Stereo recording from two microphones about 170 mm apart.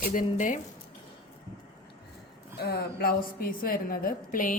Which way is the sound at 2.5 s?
70° left (ahead or behind).